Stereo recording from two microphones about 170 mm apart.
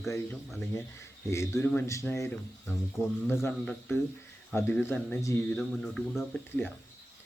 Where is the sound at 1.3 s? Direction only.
15° left (ahead or behind).